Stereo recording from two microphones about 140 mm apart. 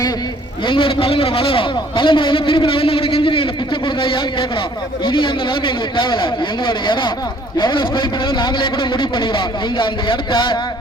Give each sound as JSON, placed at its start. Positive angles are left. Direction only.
{"t": 0.7, "sound": "a man's voice", "side_deg": 40}